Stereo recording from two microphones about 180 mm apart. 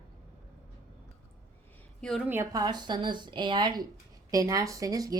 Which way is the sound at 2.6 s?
25° right (ahead or behind).